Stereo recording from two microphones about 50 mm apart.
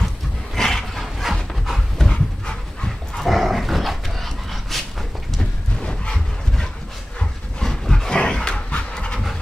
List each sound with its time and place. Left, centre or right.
0.6 s dog: centre
3.3 s dog: centre
5.8 s a sound: centre
7.6 s dog: centre